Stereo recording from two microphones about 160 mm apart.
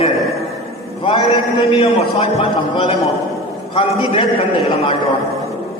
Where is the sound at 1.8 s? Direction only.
35° left (ahead or behind).